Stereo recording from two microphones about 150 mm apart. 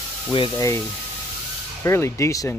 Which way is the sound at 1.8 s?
15° left (ahead or behind).